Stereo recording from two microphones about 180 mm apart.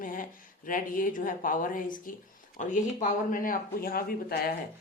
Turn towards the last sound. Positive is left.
turn(degrees=55)  # may be behind; listen again after turning